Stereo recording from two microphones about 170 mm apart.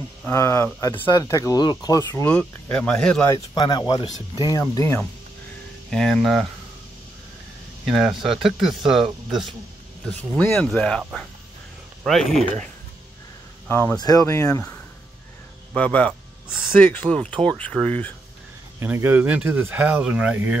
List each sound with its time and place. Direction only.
0.3 s speech: 15° left (ahead or behind)
0.9 s speech: 25° left (ahead or behind)
2.2 s speech: 5° left (ahead or behind)
3.5 s speech: 25° left (ahead or behind)
5.9 s speech: centre (ahead or behind)
7.8 s speech: 5° right (ahead or behind)
10.0 s speech: 5° left (ahead or behind)
13.7 s speech: 15° left (ahead or behind)
15.7 s speech: 5° left (ahead or behind)
18.8 s speech: 15° right (ahead or behind)